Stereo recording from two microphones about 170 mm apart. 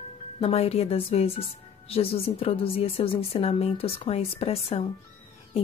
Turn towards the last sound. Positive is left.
turn(degrees=35)  # may be behind; listen again after turning